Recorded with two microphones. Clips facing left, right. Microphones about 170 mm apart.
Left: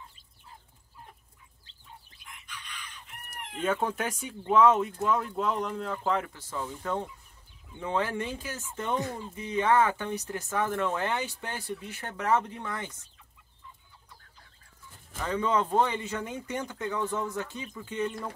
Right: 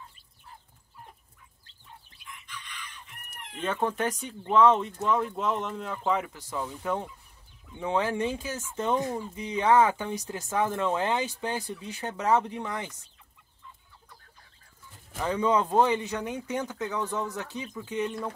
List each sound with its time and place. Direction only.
3.5 s speech: 5° left (ahead or behind); by 12.9 s 15° right (ahead or behind)
15.1 s speech: 15° right (ahead or behind)